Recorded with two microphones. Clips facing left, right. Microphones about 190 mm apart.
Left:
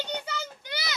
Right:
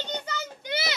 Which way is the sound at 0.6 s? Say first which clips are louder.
Right 6 dB; 25° right (ahead or behind).